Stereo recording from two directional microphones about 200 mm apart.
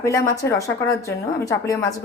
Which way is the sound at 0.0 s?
15° left (ahead or behind).